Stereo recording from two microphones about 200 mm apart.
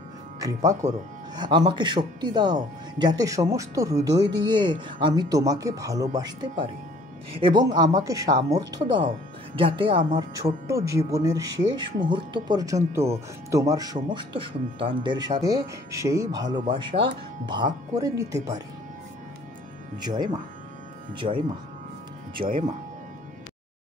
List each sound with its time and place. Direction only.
0.8 s speech: 35° right (ahead or behind)
1.3 s speech: 20° right (ahead or behind)
20.0 s speech: 20° right (ahead or behind)
21.2 s speech: 30° right (ahead or behind)
22.4 s speech: 30° right (ahead or behind)